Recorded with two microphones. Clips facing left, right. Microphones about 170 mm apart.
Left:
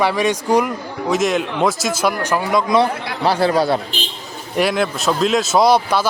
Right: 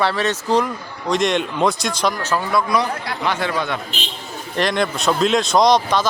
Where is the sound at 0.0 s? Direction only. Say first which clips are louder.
Left 3 dB; 10° left (ahead or behind).